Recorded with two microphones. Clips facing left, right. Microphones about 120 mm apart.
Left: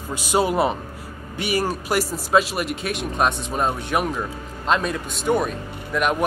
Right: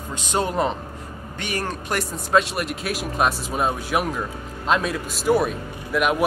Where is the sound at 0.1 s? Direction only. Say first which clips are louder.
Left 3 dB; 5° left (ahead or behind).